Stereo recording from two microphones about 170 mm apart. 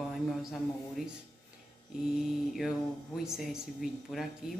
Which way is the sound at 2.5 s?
Centre (ahead or behind).